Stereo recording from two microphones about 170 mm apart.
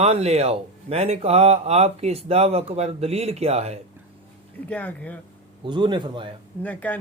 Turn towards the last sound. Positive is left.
turn(degrees=10)  # may be behind; listen again after turning